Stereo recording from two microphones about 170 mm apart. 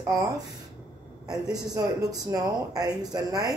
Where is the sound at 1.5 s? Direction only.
20° right (ahead or behind).